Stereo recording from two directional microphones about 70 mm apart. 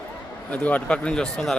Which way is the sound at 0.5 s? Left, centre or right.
Centre.